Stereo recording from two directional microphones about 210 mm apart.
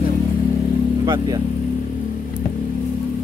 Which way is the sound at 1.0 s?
20° right (ahead or behind).